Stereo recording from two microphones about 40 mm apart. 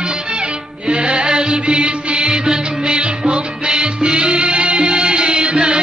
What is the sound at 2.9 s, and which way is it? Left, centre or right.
Music, right.